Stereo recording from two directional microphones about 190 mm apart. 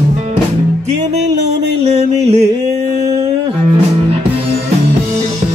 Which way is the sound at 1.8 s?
35° right (ahead or behind).